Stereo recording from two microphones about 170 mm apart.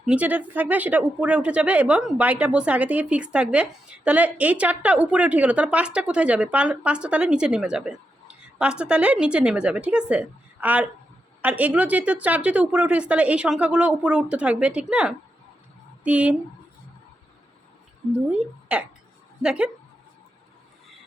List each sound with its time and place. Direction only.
0.0 s a woman's voice: 5° right (ahead or behind)
18.3 s a woman's voice: 5° right (ahead or behind)